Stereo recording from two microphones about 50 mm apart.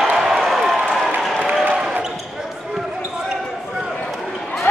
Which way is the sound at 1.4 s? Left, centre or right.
Right.